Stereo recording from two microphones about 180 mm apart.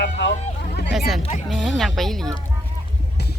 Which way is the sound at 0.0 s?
80° left.